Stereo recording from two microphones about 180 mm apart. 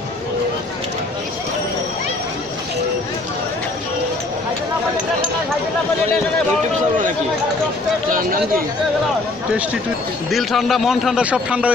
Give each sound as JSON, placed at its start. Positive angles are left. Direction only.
{"t": 8.1, "sound": "speech", "side_deg": -50}
{"t": 10.3, "sound": "a man's voice", "side_deg": 0}